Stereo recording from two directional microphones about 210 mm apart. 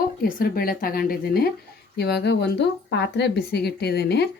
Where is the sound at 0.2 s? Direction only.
45° left (ahead or behind).